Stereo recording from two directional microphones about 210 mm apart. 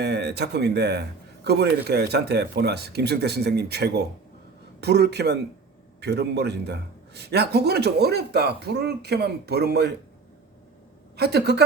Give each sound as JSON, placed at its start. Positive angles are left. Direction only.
{"t": 0.0, "sound": "a man's voice", "side_deg": -55}
{"t": 11.2, "sound": "a man's voice", "side_deg": -50}